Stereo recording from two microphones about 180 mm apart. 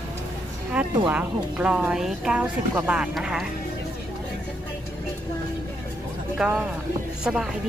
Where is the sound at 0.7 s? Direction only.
5° right (ahead or behind).